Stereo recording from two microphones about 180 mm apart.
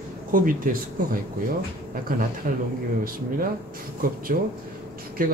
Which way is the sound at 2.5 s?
50° right (ahead or behind).